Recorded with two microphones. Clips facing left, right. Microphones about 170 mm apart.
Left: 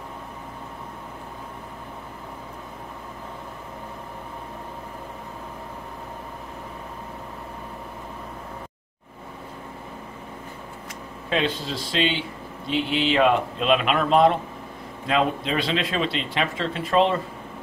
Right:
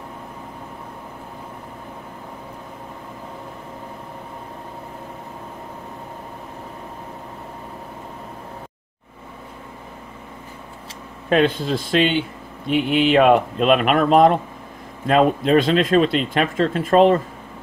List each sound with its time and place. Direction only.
11.2 s speech: 50° right (ahead or behind)